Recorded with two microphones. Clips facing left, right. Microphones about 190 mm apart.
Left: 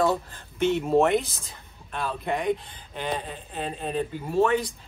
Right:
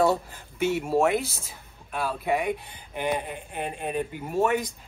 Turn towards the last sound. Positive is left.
turn(degrees=-15)  # may be behind; listen again after turning